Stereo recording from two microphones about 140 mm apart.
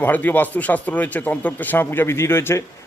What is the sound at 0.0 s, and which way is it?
Speech, 10° left (ahead or behind).